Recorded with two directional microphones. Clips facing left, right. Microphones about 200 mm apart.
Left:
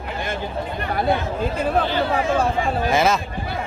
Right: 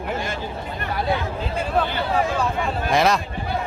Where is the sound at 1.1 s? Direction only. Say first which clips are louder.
Left 4 dB; 55° left (ahead or behind).